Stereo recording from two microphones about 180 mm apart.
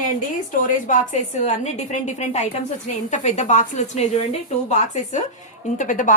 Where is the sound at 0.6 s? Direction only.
45° left (ahead or behind).